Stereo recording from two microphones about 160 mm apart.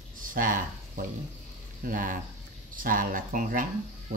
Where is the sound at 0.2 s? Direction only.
60° right (ahead or behind).